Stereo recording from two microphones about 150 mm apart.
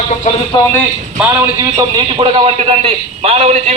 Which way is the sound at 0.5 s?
30° left (ahead or behind).